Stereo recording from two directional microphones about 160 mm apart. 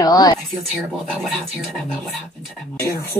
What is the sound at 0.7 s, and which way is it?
Speech, 5° right (ahead or behind).